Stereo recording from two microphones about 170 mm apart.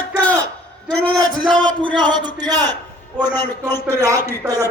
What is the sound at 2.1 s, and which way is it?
Speech, 25° right (ahead or behind).